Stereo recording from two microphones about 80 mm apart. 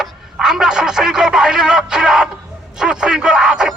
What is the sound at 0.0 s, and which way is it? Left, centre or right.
A man's voice, centre.